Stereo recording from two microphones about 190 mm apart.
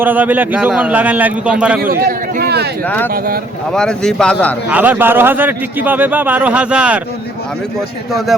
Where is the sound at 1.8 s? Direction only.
50° right (ahead or behind).